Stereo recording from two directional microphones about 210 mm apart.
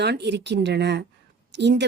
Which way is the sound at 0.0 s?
55° right (ahead or behind).